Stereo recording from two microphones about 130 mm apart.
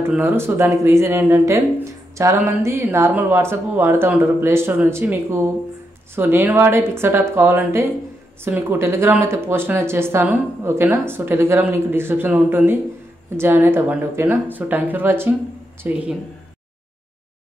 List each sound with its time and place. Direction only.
0.1 s speech: 15° right (ahead or behind)